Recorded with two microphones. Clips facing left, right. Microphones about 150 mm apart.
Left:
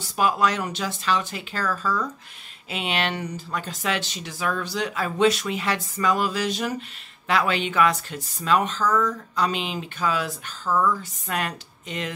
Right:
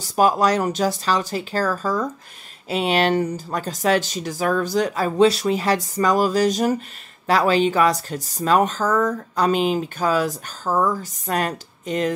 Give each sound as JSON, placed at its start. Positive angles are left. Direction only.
{"t": 0.0, "sound": "speech", "side_deg": -40}